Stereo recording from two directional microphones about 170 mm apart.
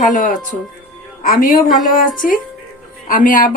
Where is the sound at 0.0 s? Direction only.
50° left (ahead or behind).